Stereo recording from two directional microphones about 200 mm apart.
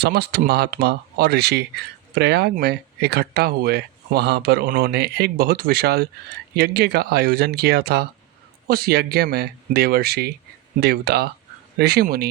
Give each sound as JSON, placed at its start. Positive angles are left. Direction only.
{"t": 0.0, "sound": "speech", "side_deg": -50}